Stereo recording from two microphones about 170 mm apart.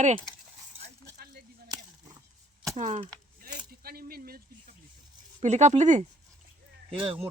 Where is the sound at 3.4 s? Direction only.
60° right (ahead or behind).